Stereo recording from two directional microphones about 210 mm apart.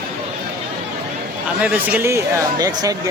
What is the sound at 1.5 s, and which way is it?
A man's voice, 5° right (ahead or behind).